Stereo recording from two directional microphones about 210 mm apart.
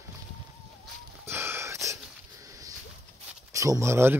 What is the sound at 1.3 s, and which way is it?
Wheeze, 10° right (ahead or behind).